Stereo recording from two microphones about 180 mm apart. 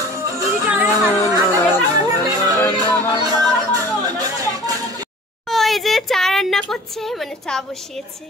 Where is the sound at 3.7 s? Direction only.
20° right (ahead or behind).